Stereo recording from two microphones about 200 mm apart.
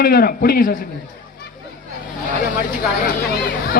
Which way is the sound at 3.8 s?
50° left (ahead or behind).